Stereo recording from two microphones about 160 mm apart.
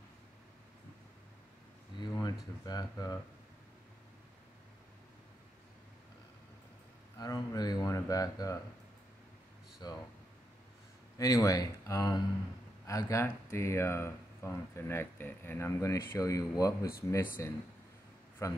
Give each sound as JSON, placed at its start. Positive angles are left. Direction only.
{"t": 2.0, "sound": "a sound", "side_deg": 25}
{"t": 2.6, "sound": "speech", "side_deg": 25}
{"t": 7.2, "sound": "speech", "side_deg": 25}
{"t": 9.8, "sound": "speech", "side_deg": 25}
{"t": 11.1, "sound": "speech", "side_deg": 20}